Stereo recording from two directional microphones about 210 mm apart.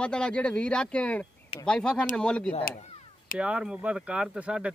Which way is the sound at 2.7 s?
40° left (ahead or behind).